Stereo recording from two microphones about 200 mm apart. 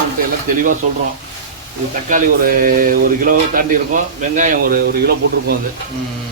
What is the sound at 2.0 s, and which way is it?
Speech, 45° right (ahead or behind).